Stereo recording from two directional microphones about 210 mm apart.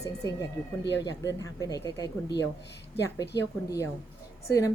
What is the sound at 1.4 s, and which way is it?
Speech, 15° left (ahead or behind).